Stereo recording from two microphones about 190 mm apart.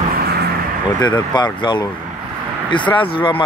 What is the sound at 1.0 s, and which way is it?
Speech, 25° left (ahead or behind).